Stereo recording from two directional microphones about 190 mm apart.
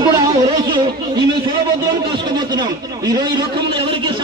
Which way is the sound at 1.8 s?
25° right (ahead or behind).